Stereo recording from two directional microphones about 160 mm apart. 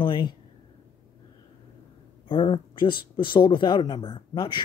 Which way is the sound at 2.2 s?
30° left (ahead or behind).